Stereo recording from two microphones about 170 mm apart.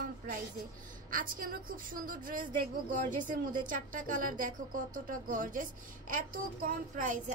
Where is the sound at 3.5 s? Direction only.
50° right (ahead or behind).